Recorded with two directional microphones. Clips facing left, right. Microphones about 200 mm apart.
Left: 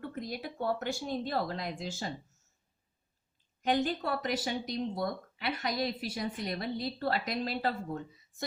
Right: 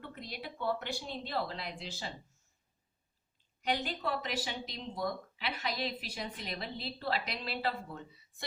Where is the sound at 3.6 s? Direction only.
45° left (ahead or behind).